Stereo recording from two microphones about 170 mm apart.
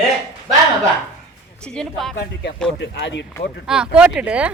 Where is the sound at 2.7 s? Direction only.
90° left.